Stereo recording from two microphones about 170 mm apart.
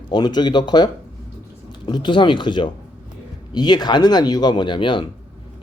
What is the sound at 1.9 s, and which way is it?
Speech, 25° left (ahead or behind).